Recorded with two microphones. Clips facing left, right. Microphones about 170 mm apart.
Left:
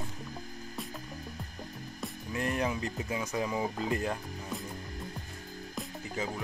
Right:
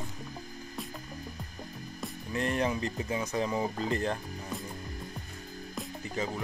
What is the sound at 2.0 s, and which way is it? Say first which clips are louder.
Speech: right 2 dB; 5° left (ahead or behind).